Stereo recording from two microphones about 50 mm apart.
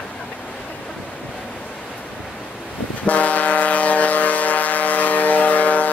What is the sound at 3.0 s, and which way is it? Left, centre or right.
Vehicle, left.